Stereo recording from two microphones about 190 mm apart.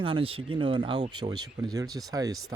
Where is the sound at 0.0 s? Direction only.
30° right (ahead or behind).